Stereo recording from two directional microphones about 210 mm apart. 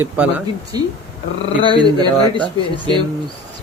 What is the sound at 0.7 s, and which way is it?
Speech, 20° right (ahead or behind).